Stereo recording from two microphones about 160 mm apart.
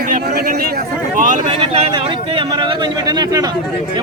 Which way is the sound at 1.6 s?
30° right (ahead or behind).